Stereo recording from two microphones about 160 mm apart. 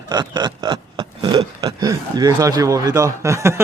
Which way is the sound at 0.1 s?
25° right (ahead or behind).